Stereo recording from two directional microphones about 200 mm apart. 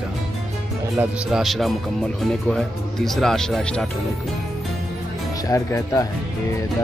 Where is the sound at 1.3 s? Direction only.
Centre (ahead or behind).